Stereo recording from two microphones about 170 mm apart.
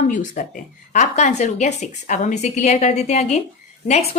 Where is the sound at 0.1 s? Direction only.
50° left (ahead or behind).